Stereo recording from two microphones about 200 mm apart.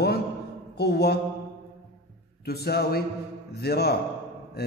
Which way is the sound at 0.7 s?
55° left (ahead or behind).